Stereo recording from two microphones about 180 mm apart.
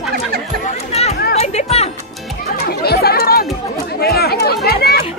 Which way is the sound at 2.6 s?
60° left (ahead or behind).